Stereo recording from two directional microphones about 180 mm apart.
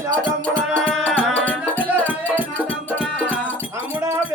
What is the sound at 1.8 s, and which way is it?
Music, 10° right (ahead or behind).